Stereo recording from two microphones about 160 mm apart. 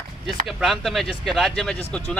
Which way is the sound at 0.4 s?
Centre (ahead or behind).